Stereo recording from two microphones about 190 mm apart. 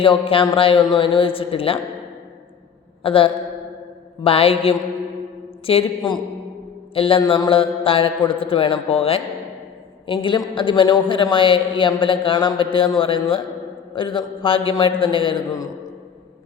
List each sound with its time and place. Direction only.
0.0 s a man's voice: 25° left (ahead or behind)
3.0 s a man's voice: 30° left (ahead or behind)
4.2 s mantra: 30° left (ahead or behind)
5.6 s a man's voice: 25° left (ahead or behind)